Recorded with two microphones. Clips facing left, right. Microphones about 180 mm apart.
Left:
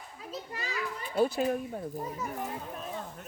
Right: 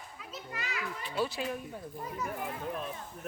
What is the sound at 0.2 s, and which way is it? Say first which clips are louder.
Children playing: left 3 dB; 35° left (ahead or behind).